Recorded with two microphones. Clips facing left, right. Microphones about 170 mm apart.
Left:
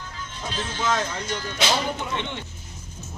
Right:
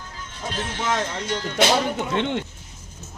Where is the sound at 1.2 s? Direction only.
60° right (ahead or behind).